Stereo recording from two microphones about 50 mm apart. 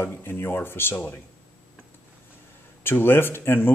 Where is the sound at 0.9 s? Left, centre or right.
Left.